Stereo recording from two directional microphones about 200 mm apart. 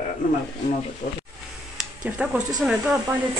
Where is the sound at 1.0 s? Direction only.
40° left (ahead or behind).